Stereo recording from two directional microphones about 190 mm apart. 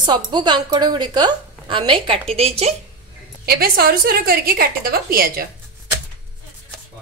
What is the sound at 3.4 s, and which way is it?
A woman's voice, 55° right (ahead or behind).